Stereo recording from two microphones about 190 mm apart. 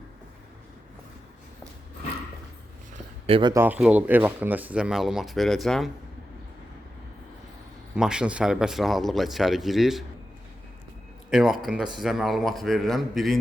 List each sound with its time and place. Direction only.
3.2 s speech: 30° right (ahead or behind)
3.5 s speech: 10° right (ahead or behind)
7.9 s speech: 5° right (ahead or behind)
11.3 s speech: centre (ahead or behind)